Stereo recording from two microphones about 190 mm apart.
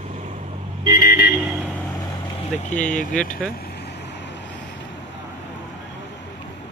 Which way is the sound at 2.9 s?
40° left (ahead or behind).